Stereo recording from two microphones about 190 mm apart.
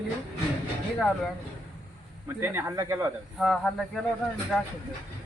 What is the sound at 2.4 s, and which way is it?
Speech, 15° right (ahead or behind).